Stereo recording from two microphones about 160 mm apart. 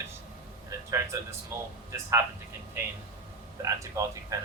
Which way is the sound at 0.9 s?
20° right (ahead or behind).